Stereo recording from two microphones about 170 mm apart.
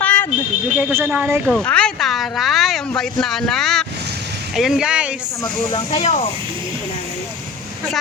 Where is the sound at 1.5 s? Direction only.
5° left (ahead or behind).